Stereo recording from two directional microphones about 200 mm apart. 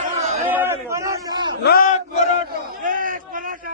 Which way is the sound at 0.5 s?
10° right (ahead or behind).